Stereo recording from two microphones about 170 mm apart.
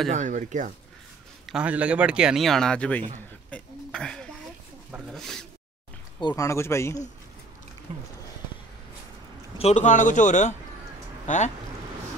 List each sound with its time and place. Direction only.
0.1 s speech: 45° right (ahead or behind)
1.4 s speech: 5° right (ahead or behind)
6.2 s speech: 20° left (ahead or behind)
9.6 s speech: 40° left (ahead or behind)